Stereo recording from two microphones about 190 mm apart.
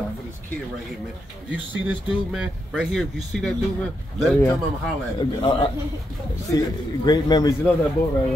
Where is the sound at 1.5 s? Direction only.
5° right (ahead or behind).